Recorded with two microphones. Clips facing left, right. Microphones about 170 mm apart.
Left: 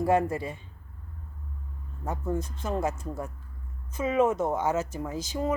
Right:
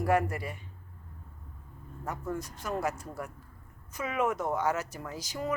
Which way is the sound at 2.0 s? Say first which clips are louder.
Left 5 dB; 25° left (ahead or behind).